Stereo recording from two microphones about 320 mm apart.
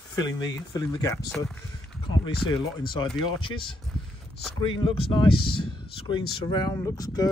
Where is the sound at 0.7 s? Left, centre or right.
Centre.